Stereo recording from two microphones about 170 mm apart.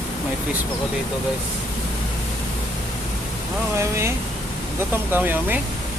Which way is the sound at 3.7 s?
15° right (ahead or behind).